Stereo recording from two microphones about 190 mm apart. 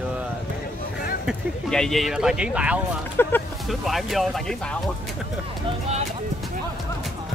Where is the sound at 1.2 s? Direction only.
Centre (ahead or behind).